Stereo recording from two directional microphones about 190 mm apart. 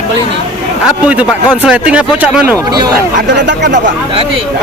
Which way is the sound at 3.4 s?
65° right (ahead or behind).